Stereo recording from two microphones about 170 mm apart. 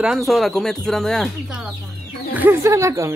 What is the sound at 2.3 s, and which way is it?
Speech, 15° right (ahead or behind).